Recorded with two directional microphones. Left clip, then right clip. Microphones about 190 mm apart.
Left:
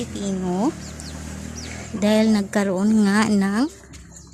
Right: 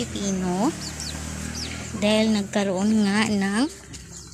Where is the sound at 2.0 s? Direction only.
35° left (ahead or behind).